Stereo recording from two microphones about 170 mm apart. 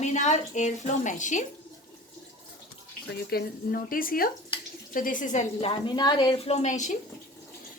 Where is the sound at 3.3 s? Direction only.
65° left (ahead or behind).